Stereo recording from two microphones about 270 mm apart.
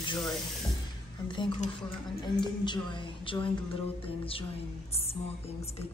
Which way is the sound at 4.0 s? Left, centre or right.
Centre.